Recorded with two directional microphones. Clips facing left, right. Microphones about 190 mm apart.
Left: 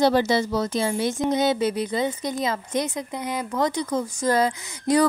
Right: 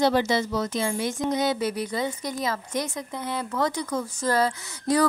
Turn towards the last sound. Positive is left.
turn(degrees=15)  # may be behind; listen again after turning